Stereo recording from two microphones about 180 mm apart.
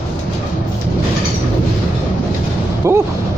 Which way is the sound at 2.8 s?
15° right (ahead or behind).